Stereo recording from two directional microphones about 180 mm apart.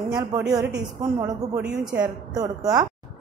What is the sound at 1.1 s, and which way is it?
A woman's voice, 20° right (ahead or behind).